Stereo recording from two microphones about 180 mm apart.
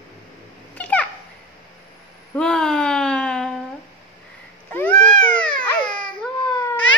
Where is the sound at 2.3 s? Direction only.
5° left (ahead or behind).